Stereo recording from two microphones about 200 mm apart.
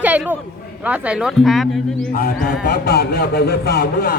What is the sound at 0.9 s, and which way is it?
Speech, 5° right (ahead or behind).